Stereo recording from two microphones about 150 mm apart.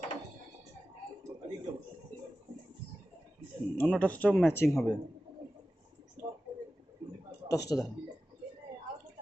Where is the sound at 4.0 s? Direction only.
10° left (ahead or behind).